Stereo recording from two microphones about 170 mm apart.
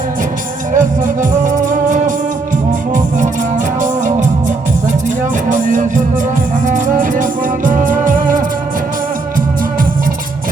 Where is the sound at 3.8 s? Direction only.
50° right (ahead or behind).